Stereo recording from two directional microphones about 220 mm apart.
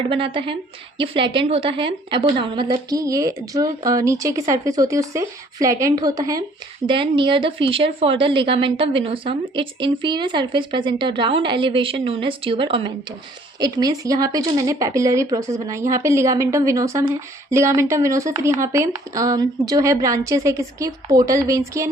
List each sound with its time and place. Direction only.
0.1 s a woman's voice: 25° right (ahead or behind)